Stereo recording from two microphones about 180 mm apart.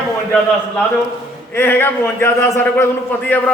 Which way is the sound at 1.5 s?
10° left (ahead or behind).